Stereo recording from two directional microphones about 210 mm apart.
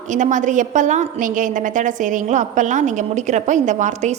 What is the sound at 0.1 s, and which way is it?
A woman's voice, 35° right (ahead or behind).